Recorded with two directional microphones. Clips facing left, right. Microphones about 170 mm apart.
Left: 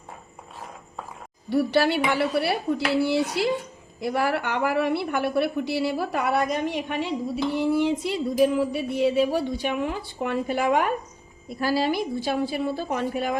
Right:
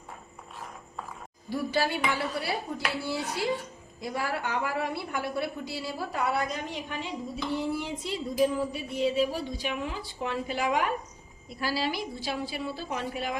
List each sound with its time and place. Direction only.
1.5 s a woman's voice: 70° left (ahead or behind)
7.6 s a sound: 70° left (ahead or behind); by 10.9 s 55° left (ahead or behind)
11.4 s a woman's voice: 50° left (ahead or behind)